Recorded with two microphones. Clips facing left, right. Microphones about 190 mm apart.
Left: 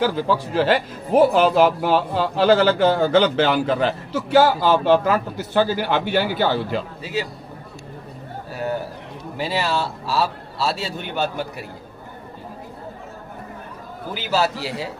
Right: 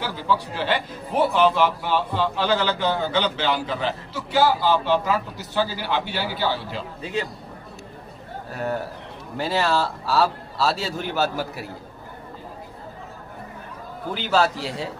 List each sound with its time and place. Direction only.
0.0 s a man's voice: 45° left (ahead or behind)
7.0 s a man's voice: 5° left (ahead or behind)
9.4 s a man's voice: centre (ahead or behind)
14.1 s a man's voice: 5° left (ahead or behind)